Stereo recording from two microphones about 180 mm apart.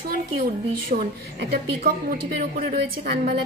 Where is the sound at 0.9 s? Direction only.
50° right (ahead or behind).